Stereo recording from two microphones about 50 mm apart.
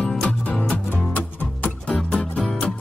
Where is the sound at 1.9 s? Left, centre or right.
Centre.